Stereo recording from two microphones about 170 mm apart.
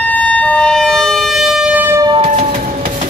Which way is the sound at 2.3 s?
45° right (ahead or behind).